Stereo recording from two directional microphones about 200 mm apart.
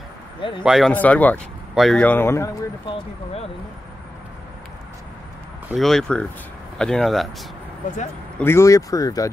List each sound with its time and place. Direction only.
0.4 s speech: 25° left (ahead or behind)
0.7 s speech: centre (ahead or behind)
5.7 s speech: centre (ahead or behind)
8.4 s speech: 10° left (ahead or behind)